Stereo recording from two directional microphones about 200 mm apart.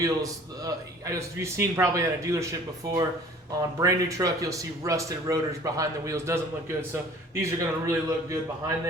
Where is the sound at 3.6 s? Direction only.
15° right (ahead or behind).